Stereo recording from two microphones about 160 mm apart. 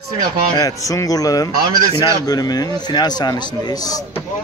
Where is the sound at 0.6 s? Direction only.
20° left (ahead or behind).